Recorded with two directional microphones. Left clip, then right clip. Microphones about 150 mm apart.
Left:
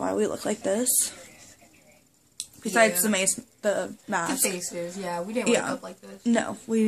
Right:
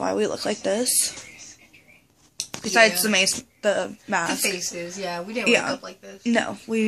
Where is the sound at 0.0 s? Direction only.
15° right (ahead or behind).